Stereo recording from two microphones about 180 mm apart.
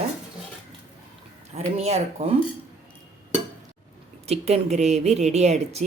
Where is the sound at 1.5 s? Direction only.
35° right (ahead or behind).